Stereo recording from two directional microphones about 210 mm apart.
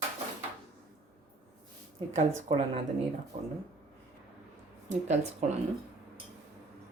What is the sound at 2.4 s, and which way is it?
Speech, 25° right (ahead or behind).